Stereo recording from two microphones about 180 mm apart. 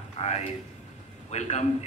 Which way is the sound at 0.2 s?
30° left (ahead or behind).